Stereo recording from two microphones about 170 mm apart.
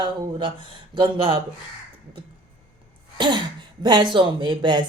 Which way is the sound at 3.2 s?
25° right (ahead or behind).